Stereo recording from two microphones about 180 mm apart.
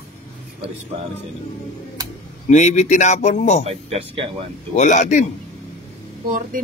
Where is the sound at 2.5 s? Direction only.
40° left (ahead or behind).